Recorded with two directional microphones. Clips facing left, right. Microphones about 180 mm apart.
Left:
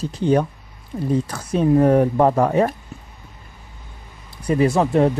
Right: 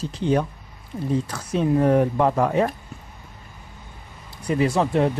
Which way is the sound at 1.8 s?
40° left (ahead or behind).